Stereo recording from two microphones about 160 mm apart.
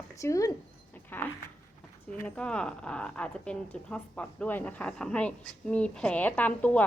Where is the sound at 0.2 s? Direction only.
20° left (ahead or behind).